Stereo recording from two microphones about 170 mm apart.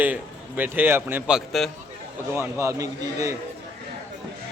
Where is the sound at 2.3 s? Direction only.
15° right (ahead or behind).